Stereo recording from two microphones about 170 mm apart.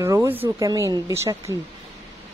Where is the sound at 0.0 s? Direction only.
20° right (ahead or behind).